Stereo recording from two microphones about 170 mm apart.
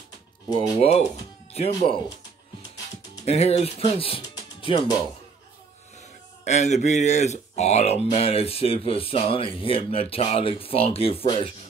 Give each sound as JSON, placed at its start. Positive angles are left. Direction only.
{"t": 0.7, "sound": "speech", "side_deg": 40}
{"t": 1.7, "sound": "speech", "side_deg": 20}
{"t": 3.3, "sound": "speech", "side_deg": 40}
{"t": 6.4, "sound": "speech", "side_deg": 40}